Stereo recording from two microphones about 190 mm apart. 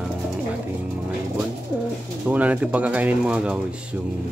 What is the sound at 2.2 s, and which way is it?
Speech, 10° right (ahead or behind).